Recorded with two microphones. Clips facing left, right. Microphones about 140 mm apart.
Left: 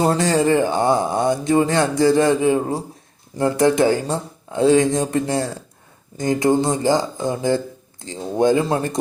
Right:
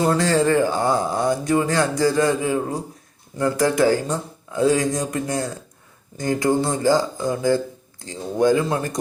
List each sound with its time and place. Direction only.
0.0 s speech: 25° left (ahead or behind)